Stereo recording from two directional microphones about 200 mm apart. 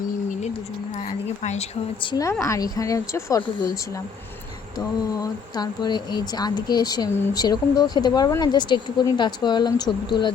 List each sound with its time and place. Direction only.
0.9 s a sound: 35° left (ahead or behind)
2.0 s a woman's voice: 20° left (ahead or behind)
4.8 s speech: 20° left (ahead or behind)